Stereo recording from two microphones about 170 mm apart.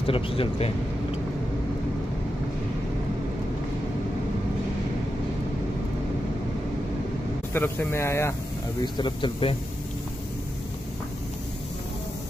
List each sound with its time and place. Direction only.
0.0 s speech: 35° left (ahead or behind)
7.5 s speech: 10° left (ahead or behind)
8.8 s speech: 25° left (ahead or behind)